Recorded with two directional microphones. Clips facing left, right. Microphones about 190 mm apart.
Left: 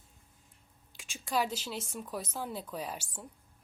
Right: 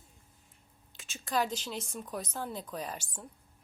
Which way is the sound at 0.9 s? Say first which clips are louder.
Even; 10° left (ahead or behind).